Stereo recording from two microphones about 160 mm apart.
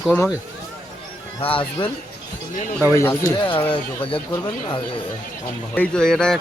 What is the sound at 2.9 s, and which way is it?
Speech, 15° left (ahead or behind).